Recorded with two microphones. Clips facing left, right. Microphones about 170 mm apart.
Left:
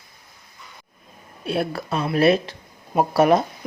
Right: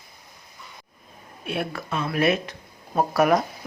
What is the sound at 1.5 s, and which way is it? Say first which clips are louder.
A woman's voice: left 4 dB; 35° left (ahead or behind).